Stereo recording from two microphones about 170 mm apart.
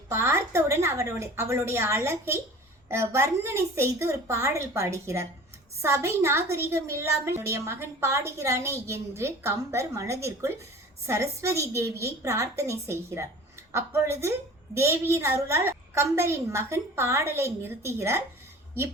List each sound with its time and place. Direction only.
0.1 s a woman's voice: 15° right (ahead or behind)